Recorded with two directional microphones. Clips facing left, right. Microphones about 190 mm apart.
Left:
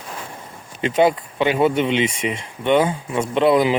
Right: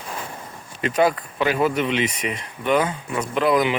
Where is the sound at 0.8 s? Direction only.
25° left (ahead or behind).